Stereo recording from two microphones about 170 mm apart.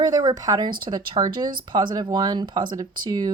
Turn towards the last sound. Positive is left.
turn(degrees=-20)  # may be behind; listen again after turning